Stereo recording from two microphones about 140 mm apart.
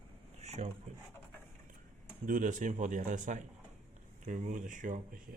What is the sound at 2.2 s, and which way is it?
Speech, 70° right (ahead or behind).